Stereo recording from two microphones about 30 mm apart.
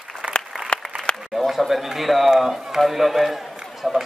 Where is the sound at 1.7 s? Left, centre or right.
Centre.